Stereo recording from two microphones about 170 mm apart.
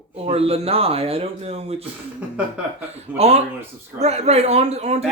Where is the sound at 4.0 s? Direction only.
40° right (ahead or behind).